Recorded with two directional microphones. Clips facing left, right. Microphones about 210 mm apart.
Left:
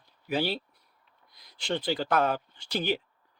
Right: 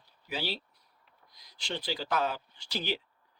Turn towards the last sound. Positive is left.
turn(degrees=50)  # may be behind; listen again after turning